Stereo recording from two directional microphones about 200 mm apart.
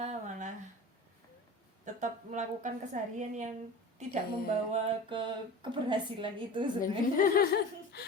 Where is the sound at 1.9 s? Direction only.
35° right (ahead or behind).